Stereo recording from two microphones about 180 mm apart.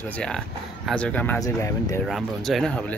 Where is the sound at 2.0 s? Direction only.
Centre (ahead or behind).